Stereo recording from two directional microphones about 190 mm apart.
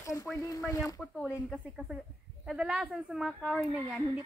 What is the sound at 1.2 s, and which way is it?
A woman's voice, 5° right (ahead or behind).